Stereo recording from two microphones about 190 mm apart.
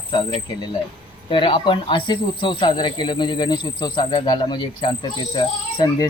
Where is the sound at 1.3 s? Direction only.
25° left (ahead or behind).